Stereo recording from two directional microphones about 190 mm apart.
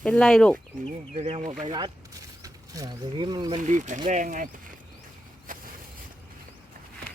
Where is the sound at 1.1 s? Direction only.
35° right (ahead or behind).